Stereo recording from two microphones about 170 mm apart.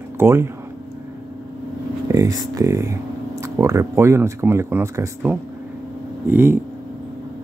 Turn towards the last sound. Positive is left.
turn(degrees=-15)  # may be behind; listen again after turning